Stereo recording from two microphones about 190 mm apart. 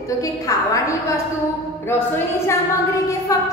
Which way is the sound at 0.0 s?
20° left (ahead or behind).